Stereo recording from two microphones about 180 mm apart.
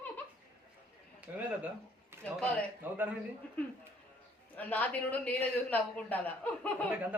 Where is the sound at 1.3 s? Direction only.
10° right (ahead or behind).